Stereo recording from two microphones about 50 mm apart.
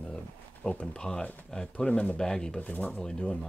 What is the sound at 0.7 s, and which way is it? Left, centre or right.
Speech, centre.